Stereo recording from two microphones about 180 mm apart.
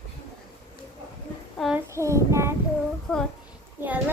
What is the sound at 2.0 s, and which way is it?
Speech, 15° right (ahead or behind).